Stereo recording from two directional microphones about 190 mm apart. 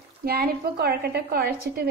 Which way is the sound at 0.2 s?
55° right (ahead or behind).